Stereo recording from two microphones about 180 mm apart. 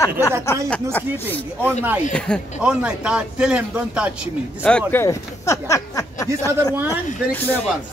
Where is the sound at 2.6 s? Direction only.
5° right (ahead or behind).